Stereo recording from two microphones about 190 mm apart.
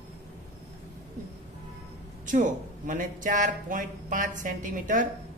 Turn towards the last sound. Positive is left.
turn(degrees=-45)  # may be behind; listen again after turning